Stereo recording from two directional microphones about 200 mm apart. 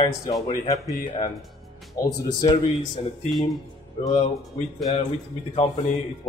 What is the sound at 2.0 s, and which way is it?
Speech, 20° left (ahead or behind).